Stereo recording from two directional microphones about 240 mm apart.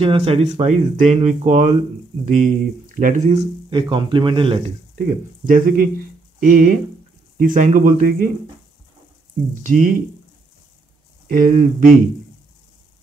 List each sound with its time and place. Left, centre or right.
0.0 s speech: right
4.9 s speech: right
9.6 s speech: right
11.3 s speech: right